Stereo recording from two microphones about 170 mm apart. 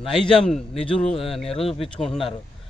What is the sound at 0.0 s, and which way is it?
A man's voice, centre (ahead or behind).